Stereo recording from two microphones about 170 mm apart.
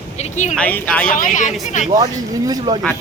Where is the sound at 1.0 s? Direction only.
50° left (ahead or behind).